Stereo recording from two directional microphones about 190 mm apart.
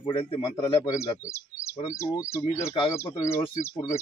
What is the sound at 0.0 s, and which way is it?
Speech, 30° left (ahead or behind).